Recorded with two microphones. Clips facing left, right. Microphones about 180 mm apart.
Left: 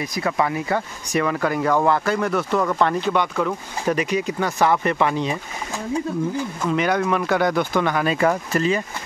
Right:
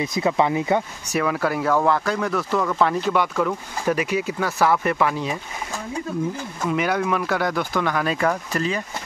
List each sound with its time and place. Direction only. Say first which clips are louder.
0.0 s speech: right 2 dB; 20° right (ahead or behind)
1.1 s speech: left 1 dB; 5° right (ahead or behind)
6.6 s speech: left 1 dB; 5° right (ahead or behind)